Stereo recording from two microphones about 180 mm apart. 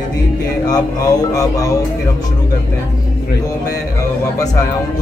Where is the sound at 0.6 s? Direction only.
20° left (ahead or behind).